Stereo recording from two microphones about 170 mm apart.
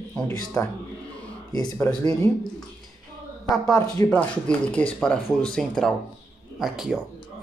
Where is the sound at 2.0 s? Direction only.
20° left (ahead or behind).